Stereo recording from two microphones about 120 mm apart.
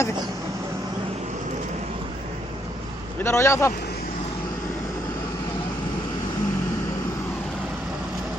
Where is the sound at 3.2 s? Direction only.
25° left (ahead or behind).